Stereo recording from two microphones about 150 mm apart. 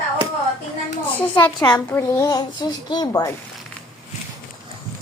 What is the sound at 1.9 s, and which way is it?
A child's voice, 15° left (ahead or behind).